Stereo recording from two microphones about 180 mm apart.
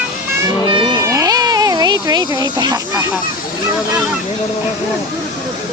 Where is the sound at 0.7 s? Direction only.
25° right (ahead or behind).